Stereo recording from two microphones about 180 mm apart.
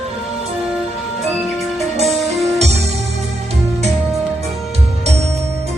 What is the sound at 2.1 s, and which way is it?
Music, centre (ahead or behind).